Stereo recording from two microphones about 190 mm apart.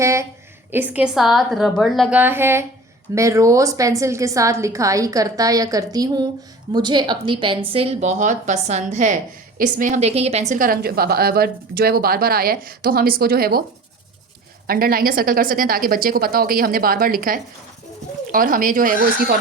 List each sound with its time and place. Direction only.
0.0 s a woman's voice: 15° right (ahead or behind); by 10.4 s 35° right (ahead or behind)
10.5 s speech: 50° right (ahead or behind)
14.7 s speech: 50° right (ahead or behind)